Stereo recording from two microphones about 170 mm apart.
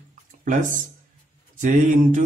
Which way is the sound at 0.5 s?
50° right (ahead or behind).